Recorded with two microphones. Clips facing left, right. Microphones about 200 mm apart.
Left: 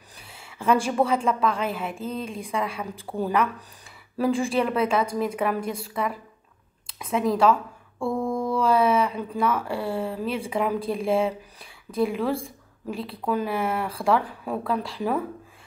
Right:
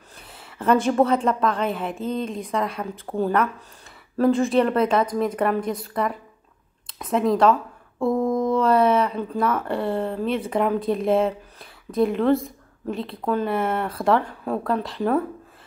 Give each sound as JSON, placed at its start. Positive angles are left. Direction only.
{"t": 0.8, "sound": "a woman's voice", "side_deg": 5}
{"t": 7.0, "sound": "a woman's voice", "side_deg": 0}
{"t": 8.0, "sound": "mantra", "side_deg": -20}
{"t": 8.5, "sound": "a woman's voice", "side_deg": 0}